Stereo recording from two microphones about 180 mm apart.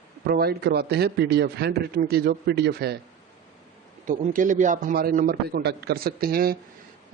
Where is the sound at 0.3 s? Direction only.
60° right (ahead or behind).